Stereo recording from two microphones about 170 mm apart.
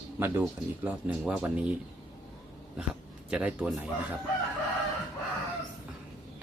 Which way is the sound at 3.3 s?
5° right (ahead or behind).